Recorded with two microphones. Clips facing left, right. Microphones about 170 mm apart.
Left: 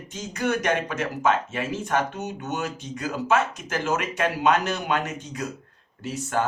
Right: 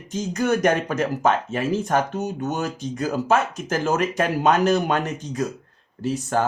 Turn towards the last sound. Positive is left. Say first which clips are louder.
# right 4 dB
turn(degrees=-35)  # may be behind; listen again after turning